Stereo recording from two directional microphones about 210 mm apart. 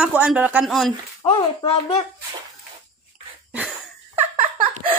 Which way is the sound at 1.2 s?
30° left (ahead or behind).